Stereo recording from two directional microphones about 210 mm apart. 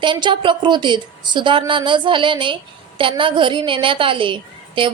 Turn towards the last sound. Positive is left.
turn(degrees=-25)  # may be behind; listen again after turning